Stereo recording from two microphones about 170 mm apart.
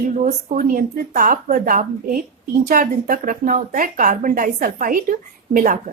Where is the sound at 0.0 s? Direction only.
45° right (ahead or behind).